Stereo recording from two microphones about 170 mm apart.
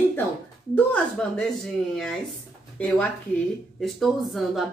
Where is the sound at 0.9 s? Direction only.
5° left (ahead or behind).